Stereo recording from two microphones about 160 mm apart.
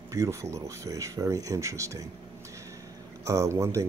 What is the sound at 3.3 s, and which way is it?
Speech, 20° right (ahead or behind).